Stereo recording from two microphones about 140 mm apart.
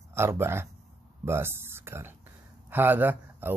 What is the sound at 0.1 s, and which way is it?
Speech, 15° right (ahead or behind).